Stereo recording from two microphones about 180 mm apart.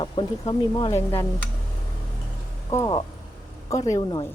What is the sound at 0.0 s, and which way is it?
Speech, 25° left (ahead or behind).